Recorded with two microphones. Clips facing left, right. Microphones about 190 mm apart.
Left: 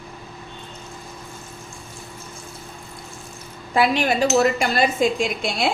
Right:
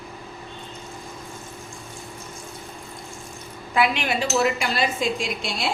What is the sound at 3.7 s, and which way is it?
Speech, 40° left (ahead or behind).